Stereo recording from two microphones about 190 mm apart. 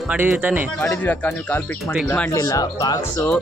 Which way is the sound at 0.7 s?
10° left (ahead or behind).